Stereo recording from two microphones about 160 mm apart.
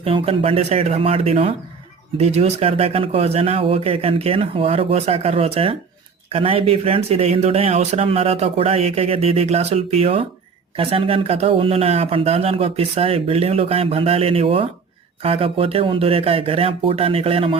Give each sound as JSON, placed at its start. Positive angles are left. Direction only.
{"t": 0.0, "sound": "speech", "side_deg": -35}